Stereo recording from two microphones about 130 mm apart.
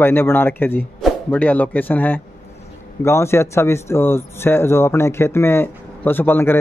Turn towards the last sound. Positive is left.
turn(degrees=15)  # may be behind; listen again after turning